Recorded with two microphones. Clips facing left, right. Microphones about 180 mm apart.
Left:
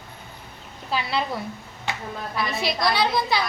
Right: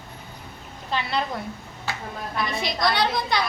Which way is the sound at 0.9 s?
5° left (ahead or behind).